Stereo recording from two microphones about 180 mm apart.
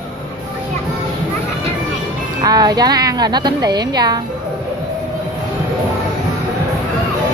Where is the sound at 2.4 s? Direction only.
20° right (ahead or behind).